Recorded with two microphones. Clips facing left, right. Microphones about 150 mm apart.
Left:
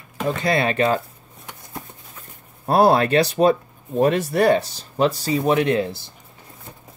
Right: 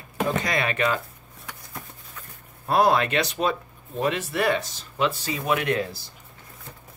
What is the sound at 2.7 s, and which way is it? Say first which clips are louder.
Speech: left 5 dB; 35° left (ahead or behind).